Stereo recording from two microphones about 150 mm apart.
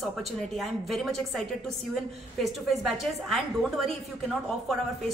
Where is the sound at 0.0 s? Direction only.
Centre (ahead or behind).